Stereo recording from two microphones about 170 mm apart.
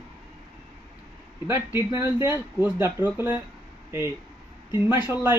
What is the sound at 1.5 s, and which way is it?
Speech, 15° right (ahead or behind).